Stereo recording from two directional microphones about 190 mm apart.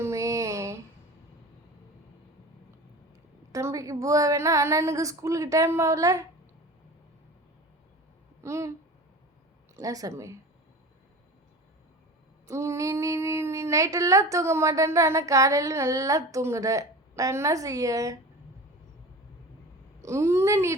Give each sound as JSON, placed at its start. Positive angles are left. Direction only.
{"t": 0.0, "sound": "a sound", "side_deg": -15}
{"t": 3.5, "sound": "a woman's voice", "side_deg": -15}
{"t": 8.4, "sound": "a woman's voice", "side_deg": -15}
{"t": 9.7, "sound": "a woman's voice", "side_deg": -20}
{"t": 12.5, "sound": "a woman's voice", "side_deg": -15}
{"t": 20.0, "sound": "a woman's voice", "side_deg": -15}